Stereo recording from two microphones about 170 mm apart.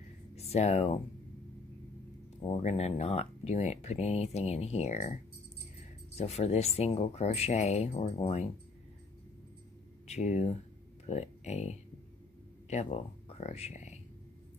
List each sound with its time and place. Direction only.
0.4 s speech: 35° left (ahead or behind)
2.4 s speech: 35° left (ahead or behind)
6.1 s speech: 35° left (ahead or behind)
10.0 s speech: 40° left (ahead or behind)